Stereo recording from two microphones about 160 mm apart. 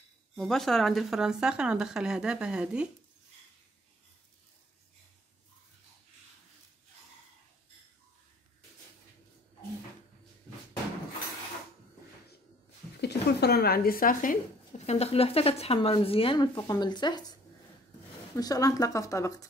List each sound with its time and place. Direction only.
0.4 s speech: centre (ahead or behind)
13.0 s a sound: 85° left; by 14.3 s 60° left (ahead or behind)
14.7 s speech: 40° left (ahead or behind)
18.4 s speech: 25° left (ahead or behind)